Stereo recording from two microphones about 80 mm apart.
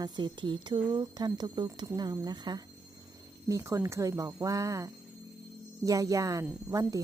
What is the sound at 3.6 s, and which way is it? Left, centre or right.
Speech, right.